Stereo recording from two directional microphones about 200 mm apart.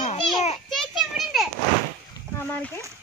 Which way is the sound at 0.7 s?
Centre (ahead or behind).